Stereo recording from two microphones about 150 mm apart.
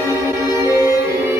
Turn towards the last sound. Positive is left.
turn(degrees=20)  # may be behind; listen again after turning